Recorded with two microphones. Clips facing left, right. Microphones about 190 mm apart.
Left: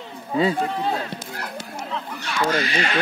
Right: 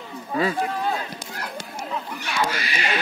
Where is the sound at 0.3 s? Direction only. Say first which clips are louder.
Left 3 dB; 20° left (ahead or behind).